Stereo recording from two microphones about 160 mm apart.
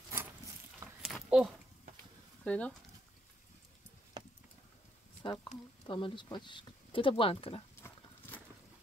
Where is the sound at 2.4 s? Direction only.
10° left (ahead or behind).